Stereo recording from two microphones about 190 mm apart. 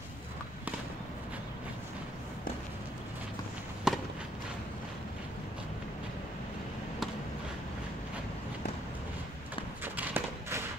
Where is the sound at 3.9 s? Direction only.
5° right (ahead or behind).